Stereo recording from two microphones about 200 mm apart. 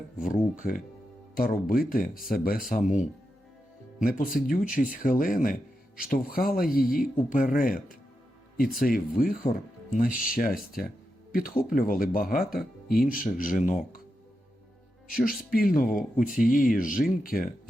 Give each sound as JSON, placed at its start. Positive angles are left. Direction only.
{"t": 0.2, "sound": "speech", "side_deg": 45}
{"t": 15.1, "sound": "speech", "side_deg": 45}